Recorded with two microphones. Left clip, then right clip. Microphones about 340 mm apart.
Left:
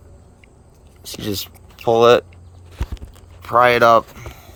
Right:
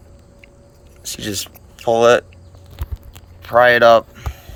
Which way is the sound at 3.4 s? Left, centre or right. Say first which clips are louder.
Right 2 dB; left.